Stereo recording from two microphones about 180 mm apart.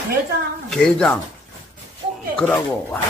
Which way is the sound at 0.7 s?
5° left (ahead or behind).